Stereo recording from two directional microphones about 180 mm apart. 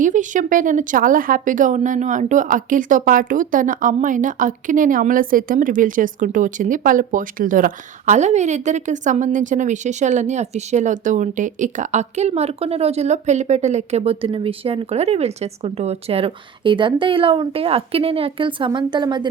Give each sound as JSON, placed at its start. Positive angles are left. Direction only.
{"t": 0.0, "sound": "speech", "side_deg": -45}